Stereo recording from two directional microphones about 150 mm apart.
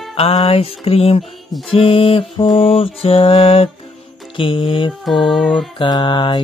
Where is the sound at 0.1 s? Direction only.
40° left (ahead or behind).